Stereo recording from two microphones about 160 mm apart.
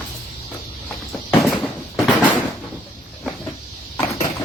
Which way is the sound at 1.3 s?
Centre (ahead or behind).